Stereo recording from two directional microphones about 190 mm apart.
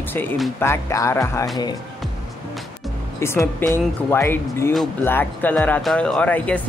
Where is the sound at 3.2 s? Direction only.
15° left (ahead or behind).